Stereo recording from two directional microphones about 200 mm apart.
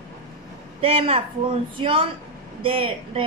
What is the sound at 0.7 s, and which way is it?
A woman's voice, 30° right (ahead or behind).